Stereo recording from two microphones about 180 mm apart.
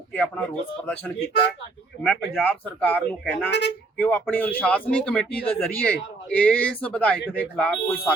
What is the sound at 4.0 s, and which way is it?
A man's voice, 10° left (ahead or behind).